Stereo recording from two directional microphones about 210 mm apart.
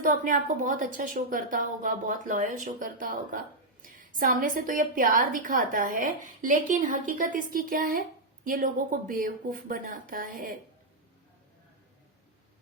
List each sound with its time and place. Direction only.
0.0 s a woman's voice: 40° right (ahead or behind)